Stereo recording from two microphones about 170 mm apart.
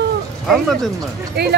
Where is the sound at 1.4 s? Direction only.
75° right (ahead or behind).